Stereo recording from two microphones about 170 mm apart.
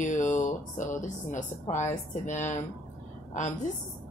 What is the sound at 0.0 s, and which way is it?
A woman's voice, 45° left (ahead or behind).